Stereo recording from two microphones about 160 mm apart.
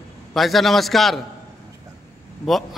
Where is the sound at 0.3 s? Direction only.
Centre (ahead or behind).